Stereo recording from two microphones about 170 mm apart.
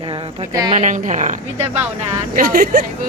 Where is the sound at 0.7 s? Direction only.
45° right (ahead or behind).